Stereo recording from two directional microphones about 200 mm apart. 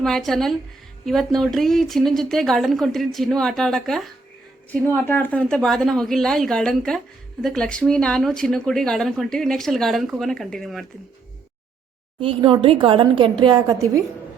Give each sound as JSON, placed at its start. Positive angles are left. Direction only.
{"t": 0.0, "sound": "speech", "side_deg": 0}
{"t": 12.2, "sound": "a woman's voice", "side_deg": -25}